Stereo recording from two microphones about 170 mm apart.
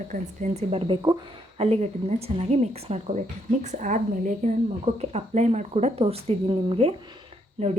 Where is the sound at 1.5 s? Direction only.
40° right (ahead or behind).